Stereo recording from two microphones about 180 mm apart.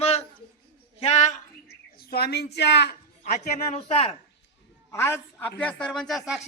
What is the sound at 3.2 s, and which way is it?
Speech, 40° left (ahead or behind).